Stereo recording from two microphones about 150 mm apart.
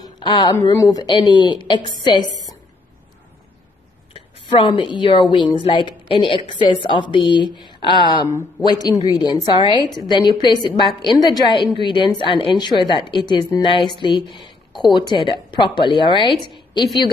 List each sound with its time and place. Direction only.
0.0 s a woman's voice: 30° left (ahead or behind)
4.1 s a sound: 35° left (ahead or behind)
4.9 s a woman's voice: 35° left (ahead or behind)